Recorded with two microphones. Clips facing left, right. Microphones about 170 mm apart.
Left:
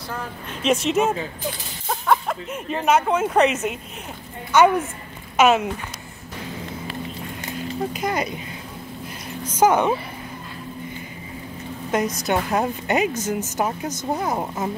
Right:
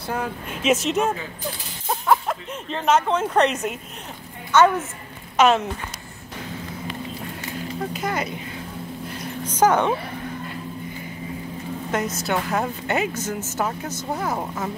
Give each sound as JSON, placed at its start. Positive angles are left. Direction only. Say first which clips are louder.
{"t": 0.6, "sound": "speech", "louder": "left 1 dB", "side_deg": 0}
{"t": 1.9, "sound": "a sound", "louder": "even", "side_deg": 0}
{"t": 2.5, "sound": "a woman's voice", "louder": "left 1 dB", "side_deg": 10}
{"t": 7.9, "sound": "a woman's voice", "louder": "left 1 dB", "side_deg": 15}
{"t": 9.6, "sound": "a woman's voice", "louder": "left 1 dB", "side_deg": 10}
{"t": 11.9, "sound": "a woman's voice", "louder": "left 3 dB", "side_deg": 15}